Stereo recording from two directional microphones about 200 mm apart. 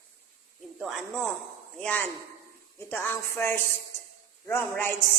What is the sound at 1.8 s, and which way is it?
A woman's voice, 10° left (ahead or behind).